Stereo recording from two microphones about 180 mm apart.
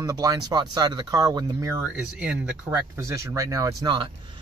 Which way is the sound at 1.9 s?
5° right (ahead or behind).